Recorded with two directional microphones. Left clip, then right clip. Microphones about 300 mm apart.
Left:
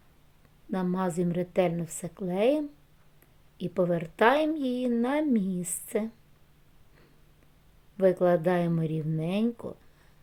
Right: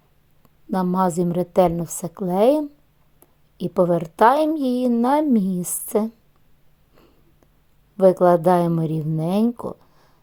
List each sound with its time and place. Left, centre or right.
0.7 s speech: centre
7.9 s speech: centre